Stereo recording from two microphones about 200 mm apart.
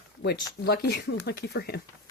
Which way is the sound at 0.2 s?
55° left (ahead or behind).